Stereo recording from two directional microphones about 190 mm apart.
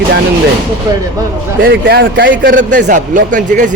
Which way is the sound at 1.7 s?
65° right (ahead or behind).